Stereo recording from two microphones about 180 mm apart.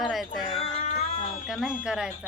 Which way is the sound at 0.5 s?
40° left (ahead or behind).